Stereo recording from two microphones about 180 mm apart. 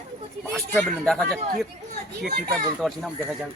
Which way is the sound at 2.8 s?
5° right (ahead or behind).